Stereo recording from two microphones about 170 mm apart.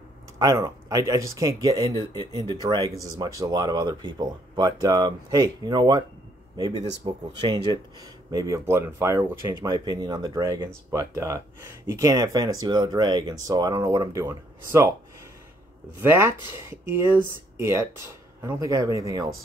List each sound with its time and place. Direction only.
0.4 s speech: 20° right (ahead or behind)
7.1 s speech: 25° right (ahead or behind)
16.0 s speech: 15° right (ahead or behind)